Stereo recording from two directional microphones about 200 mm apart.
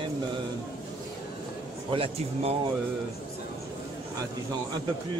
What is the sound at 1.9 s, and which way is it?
Speech, 30° right (ahead or behind).